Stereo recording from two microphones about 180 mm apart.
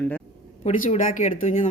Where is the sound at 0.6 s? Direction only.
45° left (ahead or behind).